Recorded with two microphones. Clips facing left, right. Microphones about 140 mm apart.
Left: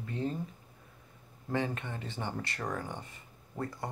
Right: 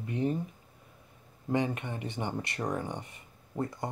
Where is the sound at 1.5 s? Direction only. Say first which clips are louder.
Right 3 dB; 15° right (ahead or behind).